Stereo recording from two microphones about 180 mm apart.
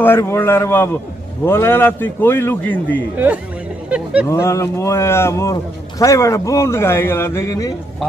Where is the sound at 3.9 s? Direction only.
5° right (ahead or behind).